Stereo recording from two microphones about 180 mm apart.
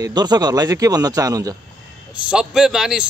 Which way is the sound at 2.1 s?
5° right (ahead or behind).